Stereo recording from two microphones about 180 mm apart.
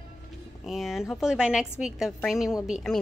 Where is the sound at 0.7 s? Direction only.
Centre (ahead or behind).